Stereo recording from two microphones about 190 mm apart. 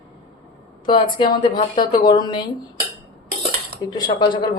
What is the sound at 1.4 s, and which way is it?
Speech, 25° left (ahead or behind).